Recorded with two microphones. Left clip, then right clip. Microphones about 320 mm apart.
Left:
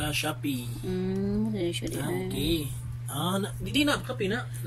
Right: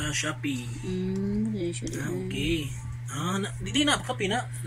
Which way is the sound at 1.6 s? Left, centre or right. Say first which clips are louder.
Left 2 dB; left.